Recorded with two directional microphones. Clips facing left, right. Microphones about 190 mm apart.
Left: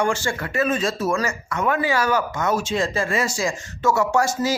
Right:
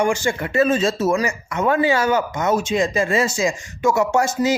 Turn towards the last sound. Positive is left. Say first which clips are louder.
# right 2 dB
turn(degrees=-20)  # may be behind; listen again after turning